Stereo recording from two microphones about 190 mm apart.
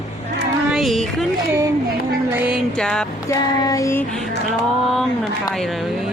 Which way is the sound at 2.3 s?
5° right (ahead or behind).